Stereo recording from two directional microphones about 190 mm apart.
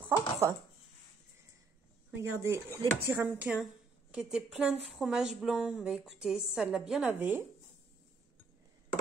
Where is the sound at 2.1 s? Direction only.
15° right (ahead or behind).